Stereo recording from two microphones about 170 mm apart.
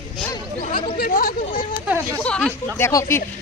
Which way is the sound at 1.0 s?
60° left (ahead or behind).